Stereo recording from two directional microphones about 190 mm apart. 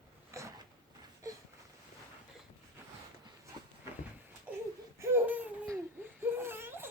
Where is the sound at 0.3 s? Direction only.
15° right (ahead or behind).